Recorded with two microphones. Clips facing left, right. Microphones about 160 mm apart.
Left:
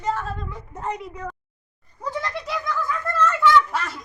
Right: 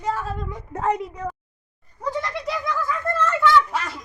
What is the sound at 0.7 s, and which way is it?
Speech, 65° right (ahead or behind).